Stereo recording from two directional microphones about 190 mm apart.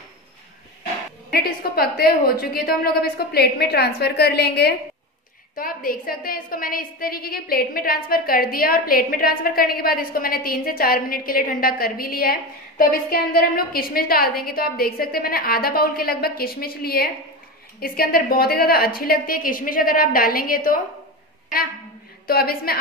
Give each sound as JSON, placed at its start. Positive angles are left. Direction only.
{"t": 1.3, "sound": "a woman's voice", "side_deg": 55}
{"t": 22.3, "sound": "a woman's voice", "side_deg": 55}